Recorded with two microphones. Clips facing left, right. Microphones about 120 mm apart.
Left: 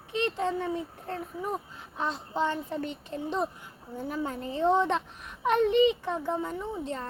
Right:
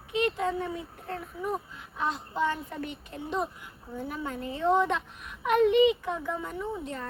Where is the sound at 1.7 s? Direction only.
30° left (ahead or behind).